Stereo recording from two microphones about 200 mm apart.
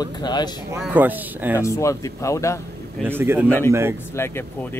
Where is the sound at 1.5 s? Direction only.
15° left (ahead or behind).